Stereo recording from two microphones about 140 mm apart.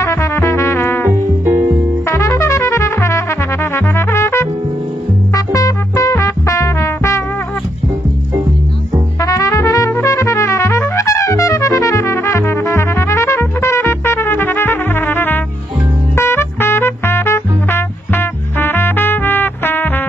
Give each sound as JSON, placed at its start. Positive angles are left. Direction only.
{"t": 0.0, "sound": "music", "side_deg": 20}
{"t": 1.4, "sound": "music", "side_deg": -15}
{"t": 2.0, "sound": "trumpet", "side_deg": 20}
{"t": 5.3, "sound": "music", "side_deg": 25}
{"t": 9.2, "sound": "trumpet", "side_deg": 25}
{"t": 16.2, "sound": "music", "side_deg": 15}